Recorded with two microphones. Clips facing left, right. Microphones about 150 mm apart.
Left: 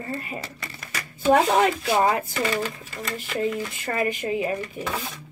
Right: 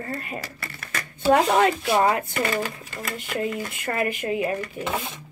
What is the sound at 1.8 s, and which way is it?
Speech, 10° right (ahead or behind).